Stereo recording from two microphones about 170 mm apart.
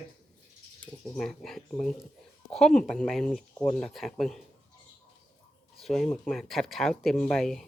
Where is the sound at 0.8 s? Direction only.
5° left (ahead or behind).